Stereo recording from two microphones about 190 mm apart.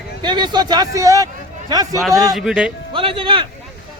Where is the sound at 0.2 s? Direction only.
25° right (ahead or behind).